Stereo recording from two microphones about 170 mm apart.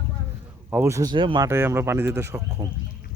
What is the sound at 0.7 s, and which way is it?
Speech, 15° right (ahead or behind).